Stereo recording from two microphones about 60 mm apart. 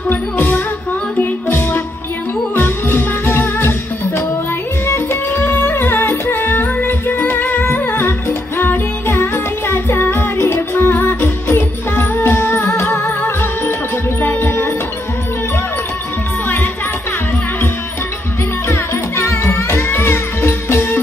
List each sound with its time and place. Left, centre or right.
0.1 s music: left
2.5 s music: left
4.8 s music: left
6.8 s music: left
10.3 s music: left
10.9 s music: left
11.2 s music: left
11.9 s music: left
13.2 s music: left
18.7 s music: left